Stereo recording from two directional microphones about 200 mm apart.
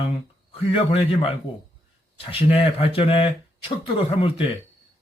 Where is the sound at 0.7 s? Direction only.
25° left (ahead or behind).